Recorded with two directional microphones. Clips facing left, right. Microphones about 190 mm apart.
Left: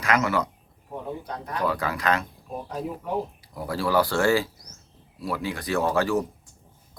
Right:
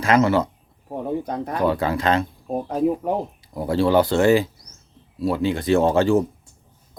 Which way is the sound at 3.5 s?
25° right (ahead or behind).